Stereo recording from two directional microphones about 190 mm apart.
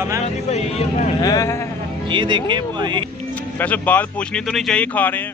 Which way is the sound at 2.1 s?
25° right (ahead or behind).